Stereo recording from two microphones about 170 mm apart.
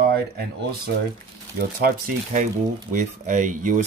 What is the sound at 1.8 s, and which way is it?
Speech, 55° right (ahead or behind).